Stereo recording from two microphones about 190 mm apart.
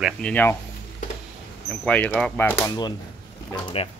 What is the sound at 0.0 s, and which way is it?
Speech, 5° left (ahead or behind).